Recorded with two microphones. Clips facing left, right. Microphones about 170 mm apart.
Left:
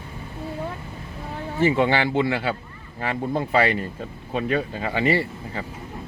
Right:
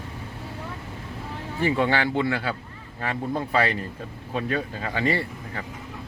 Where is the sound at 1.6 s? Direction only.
20° left (ahead or behind).